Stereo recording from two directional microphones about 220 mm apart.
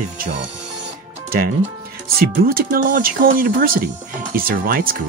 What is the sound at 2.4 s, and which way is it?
Speech, 40° right (ahead or behind).